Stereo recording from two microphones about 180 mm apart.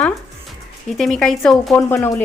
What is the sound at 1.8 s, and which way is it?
Speech, 15° left (ahead or behind).